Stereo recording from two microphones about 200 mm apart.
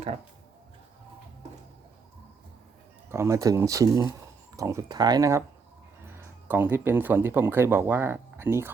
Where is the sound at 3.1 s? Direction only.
15° right (ahead or behind).